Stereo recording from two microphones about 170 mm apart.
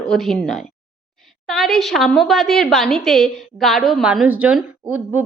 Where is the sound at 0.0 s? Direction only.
Centre (ahead or behind).